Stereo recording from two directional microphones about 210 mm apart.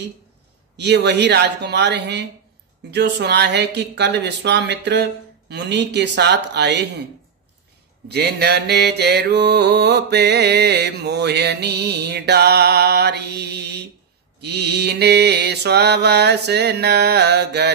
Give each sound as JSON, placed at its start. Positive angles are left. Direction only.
{"t": 0.7, "sound": "mantra", "side_deg": -55}
{"t": 8.1, "sound": "mantra", "side_deg": -50}